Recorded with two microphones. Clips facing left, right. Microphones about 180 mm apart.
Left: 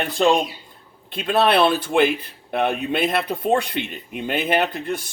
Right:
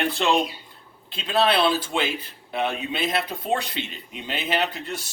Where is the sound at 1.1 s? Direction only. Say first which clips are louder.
Left 4 dB; 55° left (ahead or behind).